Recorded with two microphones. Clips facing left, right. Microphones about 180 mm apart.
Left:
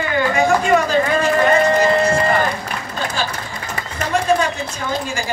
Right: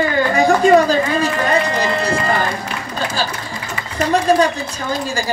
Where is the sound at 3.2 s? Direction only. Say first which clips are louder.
Right 1 dB; 35° right (ahead or behind).